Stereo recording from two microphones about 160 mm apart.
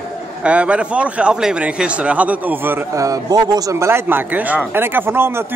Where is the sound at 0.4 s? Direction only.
5° right (ahead or behind).